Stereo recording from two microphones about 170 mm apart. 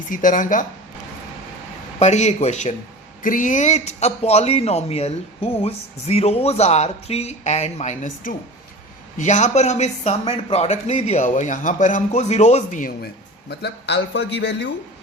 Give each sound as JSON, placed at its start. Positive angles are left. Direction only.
{"t": 0.1, "sound": "speech", "side_deg": 50}
{"t": 2.0, "sound": "speech", "side_deg": 40}
{"t": 13.5, "sound": "a man's voice", "side_deg": 80}